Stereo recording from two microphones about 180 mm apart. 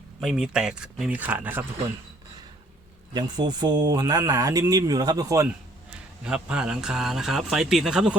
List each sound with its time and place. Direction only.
0.2 s a man's voice: 5° right (ahead or behind)
3.2 s speech: 25° right (ahead or behind)
6.2 s a man's voice: 5° right (ahead or behind)